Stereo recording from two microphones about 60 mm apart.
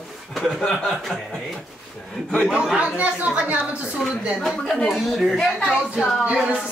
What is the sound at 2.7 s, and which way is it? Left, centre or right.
Speech, right.